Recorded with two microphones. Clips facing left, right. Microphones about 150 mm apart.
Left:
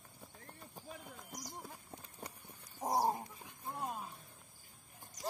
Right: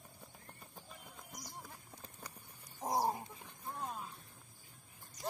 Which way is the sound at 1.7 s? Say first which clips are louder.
Left 2 dB; 25° left (ahead or behind).